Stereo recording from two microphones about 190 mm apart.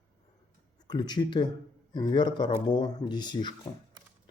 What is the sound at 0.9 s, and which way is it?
Speech, 25° left (ahead or behind).